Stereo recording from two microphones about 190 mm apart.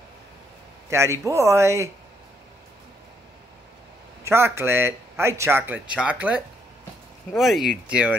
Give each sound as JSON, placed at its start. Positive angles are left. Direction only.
{"t": 0.8, "sound": "speech", "side_deg": -15}
{"t": 4.2, "sound": "speech", "side_deg": -10}